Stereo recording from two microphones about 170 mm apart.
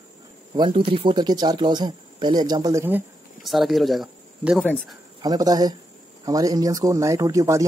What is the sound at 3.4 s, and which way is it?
Speech, centre (ahead or behind).